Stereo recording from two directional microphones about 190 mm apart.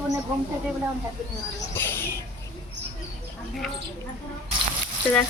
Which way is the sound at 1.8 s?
10° left (ahead or behind).